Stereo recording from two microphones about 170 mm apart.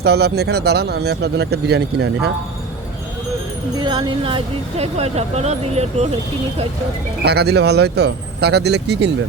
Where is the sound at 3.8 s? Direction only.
25° right (ahead or behind).